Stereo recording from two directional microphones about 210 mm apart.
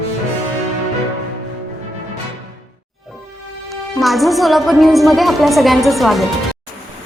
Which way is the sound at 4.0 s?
Centre (ahead or behind).